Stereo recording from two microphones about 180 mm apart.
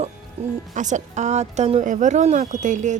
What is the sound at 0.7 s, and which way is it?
Speech, 40° right (ahead or behind).